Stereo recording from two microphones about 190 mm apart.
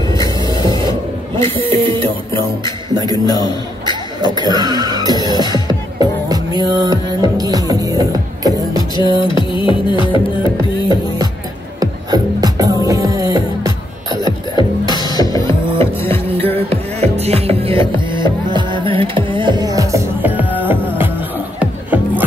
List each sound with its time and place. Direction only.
1.3 s speech: 30° right (ahead or behind)
3.1 s music: 20° left (ahead or behind)
3.8 s throat clearing: 20° right (ahead or behind)
5.2 s music: 20° left (ahead or behind)
5.9 s music: 20° right (ahead or behind)
8.9 s music: 25° left (ahead or behind)
11.8 s music: 20° right (ahead or behind)
14.9 s music: 20° left (ahead or behind)
16.3 s music: 30° right (ahead or behind); by 22.2 s 10° right (ahead or behind)